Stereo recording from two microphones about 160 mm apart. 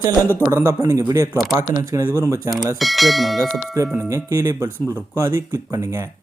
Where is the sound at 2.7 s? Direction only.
Centre (ahead or behind).